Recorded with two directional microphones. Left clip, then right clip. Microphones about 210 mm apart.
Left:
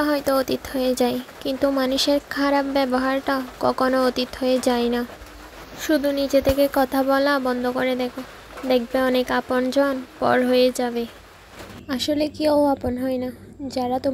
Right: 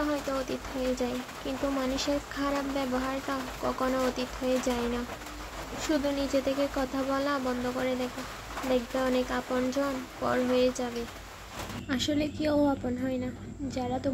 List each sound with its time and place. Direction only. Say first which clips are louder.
0.0 s speech: left 10 dB; 30° left (ahead or behind)
6.3 s speech: left 13 dB; 35° left (ahead or behind)
11.9 s a woman's voice: left 7 dB; 25° left (ahead or behind)